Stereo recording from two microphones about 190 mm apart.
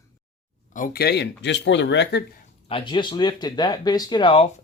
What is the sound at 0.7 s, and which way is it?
Speech, 50° left (ahead or behind).